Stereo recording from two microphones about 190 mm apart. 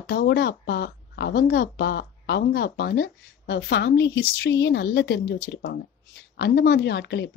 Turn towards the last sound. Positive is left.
turn(degrees=65)  # may be behind; listen again after turning